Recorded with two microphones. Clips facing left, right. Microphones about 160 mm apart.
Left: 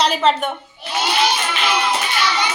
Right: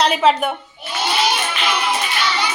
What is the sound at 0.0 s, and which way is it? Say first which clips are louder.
Speech: right 2 dB; 5° right (ahead or behind).